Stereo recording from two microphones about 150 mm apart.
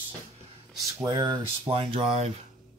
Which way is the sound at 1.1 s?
30° right (ahead or behind).